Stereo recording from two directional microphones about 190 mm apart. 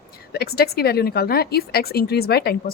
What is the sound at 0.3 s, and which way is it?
A woman's voice, 55° left (ahead or behind).